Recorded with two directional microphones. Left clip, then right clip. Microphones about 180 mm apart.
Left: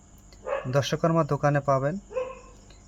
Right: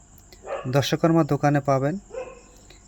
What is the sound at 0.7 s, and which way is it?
Speech, 20° right (ahead or behind).